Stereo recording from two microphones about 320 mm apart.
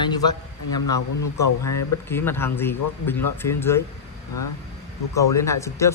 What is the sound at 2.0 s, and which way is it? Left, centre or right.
Speech, centre.